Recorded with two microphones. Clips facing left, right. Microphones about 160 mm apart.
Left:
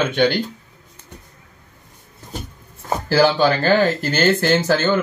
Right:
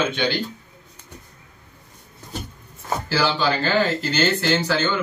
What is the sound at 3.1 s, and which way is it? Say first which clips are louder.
Speech: left 7 dB; 50° left (ahead or behind).